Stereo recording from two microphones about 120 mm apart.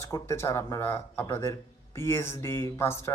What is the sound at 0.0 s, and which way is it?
Speech, 25° left (ahead or behind).